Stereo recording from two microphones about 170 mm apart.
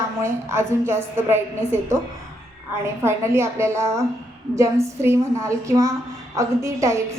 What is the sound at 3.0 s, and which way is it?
A woman's voice, 15° right (ahead or behind).